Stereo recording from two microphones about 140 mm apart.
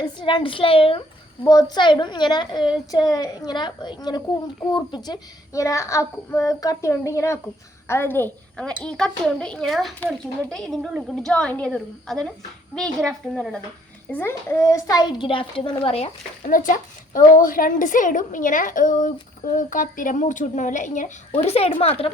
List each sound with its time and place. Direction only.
0.0 s a woman's voice: 35° left (ahead or behind)
1.5 s a woman's voice: 30° left (ahead or behind); by 13.6 s 5° left (ahead or behind)
14.1 s a woman's voice: 15° left (ahead or behind); by 16.0 s 40° left (ahead or behind)
16.4 s a woman's voice: 70° left (ahead or behind)
21.3 s a woman's voice: 50° left (ahead or behind)